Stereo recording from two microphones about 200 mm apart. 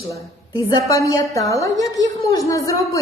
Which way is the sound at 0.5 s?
15° left (ahead or behind).